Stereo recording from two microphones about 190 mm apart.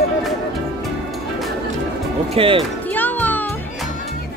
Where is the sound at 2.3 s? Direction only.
30° right (ahead or behind).